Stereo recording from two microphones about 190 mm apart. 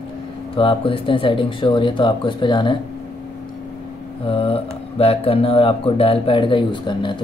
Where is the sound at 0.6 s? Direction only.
30° left (ahead or behind).